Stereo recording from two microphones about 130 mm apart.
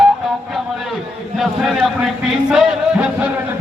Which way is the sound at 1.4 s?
Centre (ahead or behind).